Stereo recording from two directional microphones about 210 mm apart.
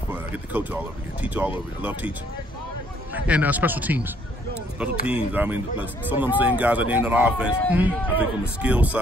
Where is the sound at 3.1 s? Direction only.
5° right (ahead or behind).